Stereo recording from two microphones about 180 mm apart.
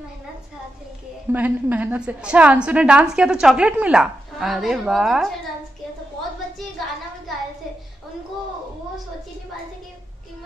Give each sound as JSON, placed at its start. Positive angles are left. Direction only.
{"t": 1.3, "sound": "a woman's voice", "side_deg": -10}